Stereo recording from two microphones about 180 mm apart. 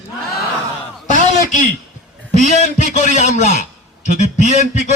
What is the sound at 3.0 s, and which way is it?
Speech, 40° left (ahead or behind).